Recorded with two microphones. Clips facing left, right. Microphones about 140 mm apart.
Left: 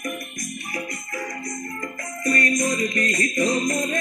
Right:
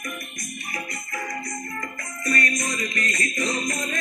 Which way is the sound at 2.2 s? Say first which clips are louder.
Left 4 dB; 45° left (ahead or behind).